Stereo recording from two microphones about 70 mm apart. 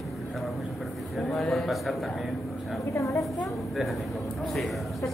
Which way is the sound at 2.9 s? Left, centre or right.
Left.